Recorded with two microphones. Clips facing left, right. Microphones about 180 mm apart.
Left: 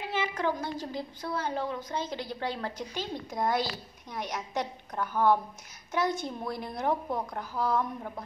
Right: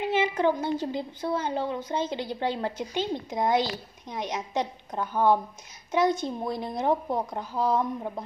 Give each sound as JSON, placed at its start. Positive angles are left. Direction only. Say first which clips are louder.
{"t": 0.1, "sound": "a woman's voice", "louder": "right 5 dB", "side_deg": -25}